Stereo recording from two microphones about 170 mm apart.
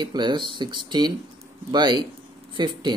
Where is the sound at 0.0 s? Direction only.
25° right (ahead or behind).